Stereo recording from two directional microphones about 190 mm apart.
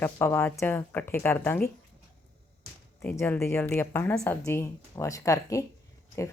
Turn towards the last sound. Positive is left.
turn(degrees=15)  # may be behind; listen again after turning